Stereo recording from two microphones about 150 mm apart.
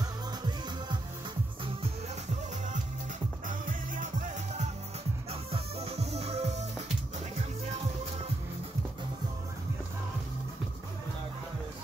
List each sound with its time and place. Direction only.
0.0 s music: 30° right (ahead or behind)
3.4 s music: 60° right (ahead or behind)
5.3 s music: 40° right (ahead or behind)